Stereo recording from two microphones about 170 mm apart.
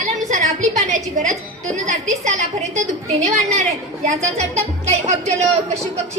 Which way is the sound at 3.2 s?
45° right (ahead or behind).